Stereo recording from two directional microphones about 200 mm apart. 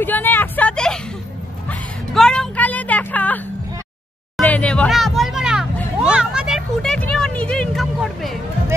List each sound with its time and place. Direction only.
0.0 s vehicle: 10° left (ahead or behind)
1.7 s music: 5° left (ahead or behind)
4.4 s a sound: 5° left (ahead or behind)